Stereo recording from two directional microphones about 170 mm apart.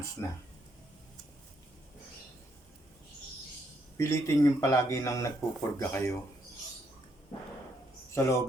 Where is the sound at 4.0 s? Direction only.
15° left (ahead or behind).